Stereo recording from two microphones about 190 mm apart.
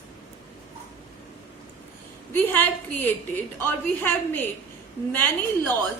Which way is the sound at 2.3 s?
10° left (ahead or behind).